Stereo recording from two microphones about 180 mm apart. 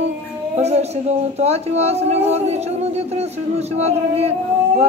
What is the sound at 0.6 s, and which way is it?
Speech, 35° right (ahead or behind).